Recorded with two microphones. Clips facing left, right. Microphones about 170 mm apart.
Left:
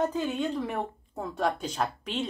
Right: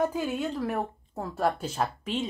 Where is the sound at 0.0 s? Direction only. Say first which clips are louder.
Even; 10° right (ahead or behind).